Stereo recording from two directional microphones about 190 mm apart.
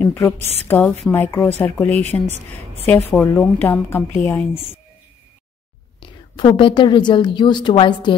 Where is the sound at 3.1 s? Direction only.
5° left (ahead or behind).